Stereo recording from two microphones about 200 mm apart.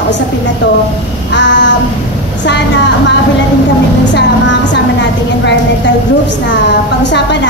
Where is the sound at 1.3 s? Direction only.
60° left (ahead or behind).